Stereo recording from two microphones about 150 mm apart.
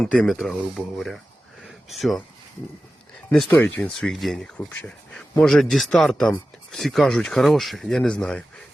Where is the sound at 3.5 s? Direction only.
10° left (ahead or behind).